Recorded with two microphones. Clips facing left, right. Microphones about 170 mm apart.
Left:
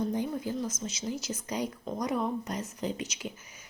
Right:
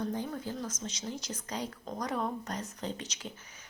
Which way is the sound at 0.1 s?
15° left (ahead or behind).